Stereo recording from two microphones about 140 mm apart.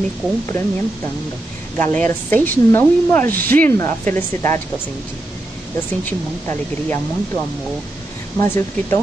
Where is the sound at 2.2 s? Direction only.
15° left (ahead or behind).